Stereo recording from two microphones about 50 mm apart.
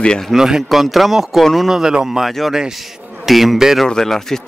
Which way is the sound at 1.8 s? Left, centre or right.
Centre.